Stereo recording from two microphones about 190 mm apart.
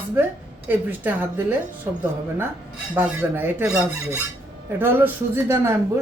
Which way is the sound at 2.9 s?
10° right (ahead or behind).